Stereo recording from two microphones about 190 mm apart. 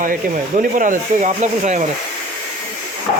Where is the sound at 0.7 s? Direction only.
40° right (ahead or behind).